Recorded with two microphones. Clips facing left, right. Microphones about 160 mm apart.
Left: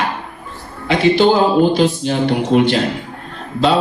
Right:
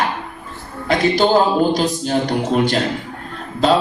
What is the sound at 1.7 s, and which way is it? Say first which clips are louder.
A man's voice: left 3 dB; 40° right (ahead or behind).